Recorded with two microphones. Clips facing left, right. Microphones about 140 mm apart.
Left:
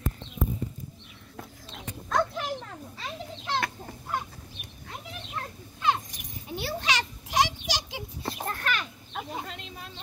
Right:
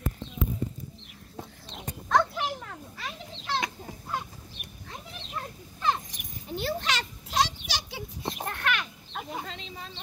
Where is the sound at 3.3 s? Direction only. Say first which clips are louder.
Left 1 dB; 20° left (ahead or behind).